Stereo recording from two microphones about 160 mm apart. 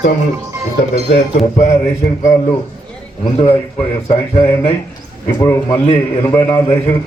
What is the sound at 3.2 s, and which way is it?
A man's voice, 35° left (ahead or behind).